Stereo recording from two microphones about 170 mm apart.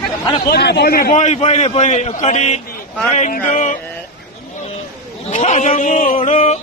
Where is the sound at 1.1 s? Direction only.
40° left (ahead or behind).